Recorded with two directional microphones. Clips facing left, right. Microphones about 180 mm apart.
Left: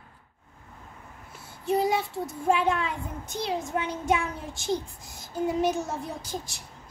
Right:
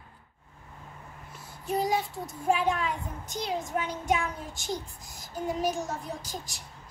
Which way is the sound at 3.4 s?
25° left (ahead or behind).